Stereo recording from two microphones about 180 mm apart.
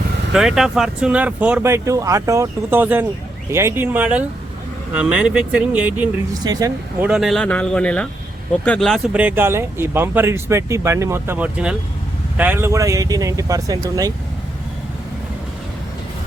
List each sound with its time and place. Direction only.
0.3 s speech: centre (ahead or behind)
6.4 s speech: 20° right (ahead or behind)
7.0 s speech: centre (ahead or behind); by 14.1 s 20° right (ahead or behind)